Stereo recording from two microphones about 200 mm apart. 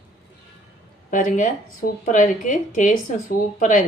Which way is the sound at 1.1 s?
40° left (ahead or behind).